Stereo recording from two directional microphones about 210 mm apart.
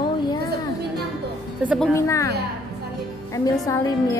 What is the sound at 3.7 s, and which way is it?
Speech, 15° left (ahead or behind).